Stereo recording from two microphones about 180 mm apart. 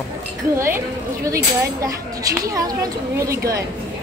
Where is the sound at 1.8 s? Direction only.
20° right (ahead or behind).